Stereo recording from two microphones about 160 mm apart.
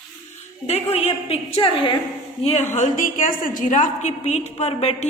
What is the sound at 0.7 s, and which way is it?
A woman's voice, 40° left (ahead or behind).